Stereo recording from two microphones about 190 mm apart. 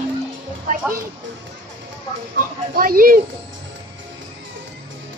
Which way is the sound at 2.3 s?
50° right (ahead or behind).